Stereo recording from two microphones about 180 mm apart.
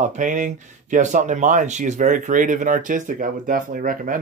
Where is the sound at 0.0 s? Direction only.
45° right (ahead or behind).